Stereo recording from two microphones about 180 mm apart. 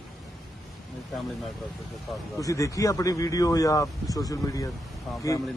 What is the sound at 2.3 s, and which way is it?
A man's voice, 20° left (ahead or behind).